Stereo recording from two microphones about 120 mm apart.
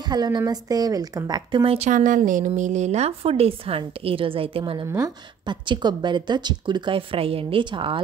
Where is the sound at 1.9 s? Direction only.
90° right; by 4.8 s 50° right (ahead or behind).